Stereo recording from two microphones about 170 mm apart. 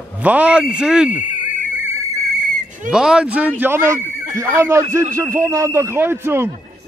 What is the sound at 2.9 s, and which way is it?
A man's voice, 5° right (ahead or behind).